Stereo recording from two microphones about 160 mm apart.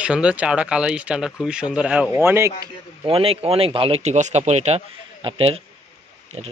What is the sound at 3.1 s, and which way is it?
Speech, 35° right (ahead or behind).